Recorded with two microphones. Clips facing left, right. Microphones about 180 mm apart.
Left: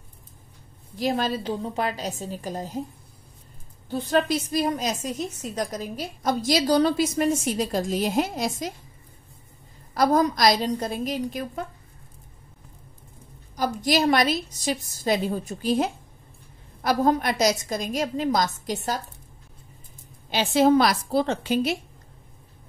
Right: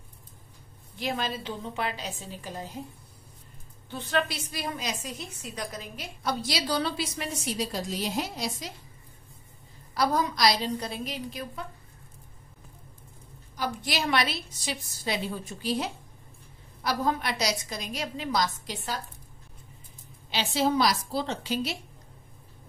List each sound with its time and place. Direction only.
0.9 s a woman's voice: 40° left (ahead or behind)
3.9 s a woman's voice: 40° left (ahead or behind)
9.9 s a woman's voice: 45° left (ahead or behind)
13.6 s a woman's voice: 40° left (ahead or behind)
20.2 s a woman's voice: 50° left (ahead or behind)